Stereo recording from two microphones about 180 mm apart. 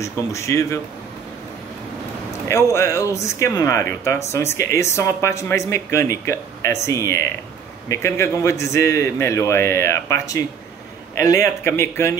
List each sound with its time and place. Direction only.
0.0 s speech: 15° left (ahead or behind)
2.4 s speech: 15° left (ahead or behind)